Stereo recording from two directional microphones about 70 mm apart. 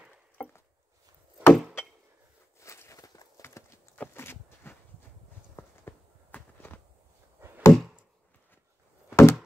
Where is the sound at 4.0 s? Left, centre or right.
Left.